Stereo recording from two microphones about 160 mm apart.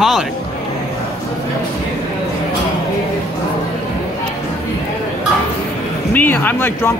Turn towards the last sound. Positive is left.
turn(degrees=10)  # may be behind; listen again after turning